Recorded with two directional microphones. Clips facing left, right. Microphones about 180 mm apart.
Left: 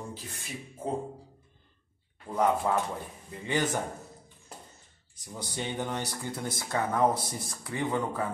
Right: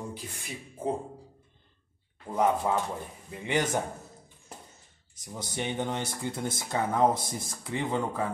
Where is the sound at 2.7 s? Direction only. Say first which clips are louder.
Even; 15° right (ahead or behind).